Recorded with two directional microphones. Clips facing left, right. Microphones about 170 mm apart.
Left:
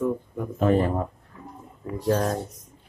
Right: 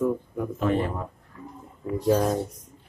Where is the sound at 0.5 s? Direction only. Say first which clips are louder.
Left 5 dB; 40° left (ahead or behind).